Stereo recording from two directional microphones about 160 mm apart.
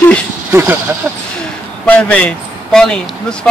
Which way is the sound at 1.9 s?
5° left (ahead or behind).